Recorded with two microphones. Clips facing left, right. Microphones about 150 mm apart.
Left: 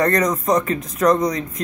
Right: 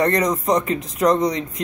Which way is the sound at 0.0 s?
25° right (ahead or behind).